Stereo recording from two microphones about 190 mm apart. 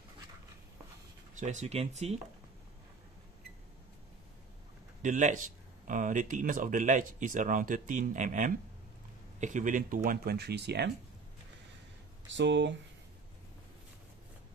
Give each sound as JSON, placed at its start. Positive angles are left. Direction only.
{"t": 1.4, "sound": "speech", "side_deg": -40}
{"t": 5.0, "sound": "speech", "side_deg": -40}
{"t": 12.3, "sound": "speech", "side_deg": -70}